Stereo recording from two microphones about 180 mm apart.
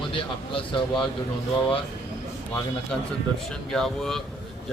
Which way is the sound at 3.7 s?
Centre (ahead or behind).